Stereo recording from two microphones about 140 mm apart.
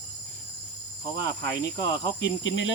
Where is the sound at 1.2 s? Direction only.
25° left (ahead or behind).